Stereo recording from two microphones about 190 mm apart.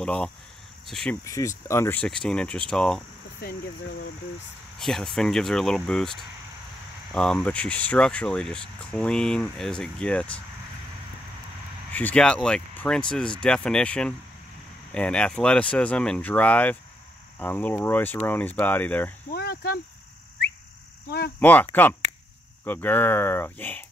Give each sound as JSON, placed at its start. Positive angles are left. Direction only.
{"t": 0.0, "sound": "speech", "side_deg": 5}
{"t": 1.2, "sound": "speech", "side_deg": 15}
{"t": 4.7, "sound": "speech", "side_deg": 0}
{"t": 11.9, "sound": "speech", "side_deg": 5}
{"t": 19.3, "sound": "cricket", "side_deg": 55}
{"t": 21.4, "sound": "speech", "side_deg": 10}
{"t": 22.7, "sound": "speech", "side_deg": 10}